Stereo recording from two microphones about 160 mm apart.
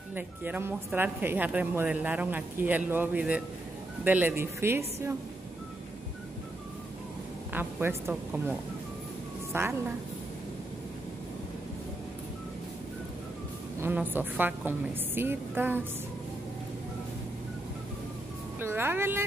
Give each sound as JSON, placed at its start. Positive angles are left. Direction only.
{"t": 0.1, "sound": "a woman's voice", "side_deg": -10}
{"t": 7.5, "sound": "a woman's voice", "side_deg": -15}
{"t": 13.7, "sound": "a woman's voice", "side_deg": -15}
{"t": 18.6, "sound": "a woman's voice", "side_deg": -15}